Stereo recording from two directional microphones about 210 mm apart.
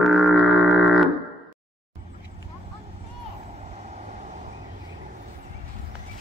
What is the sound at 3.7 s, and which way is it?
Vehicle, 35° right (ahead or behind).